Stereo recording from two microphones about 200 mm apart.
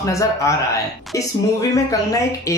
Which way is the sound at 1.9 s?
15° left (ahead or behind).